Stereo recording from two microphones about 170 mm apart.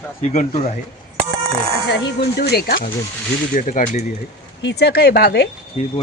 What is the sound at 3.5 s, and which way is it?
Speech, 50° left (ahead or behind).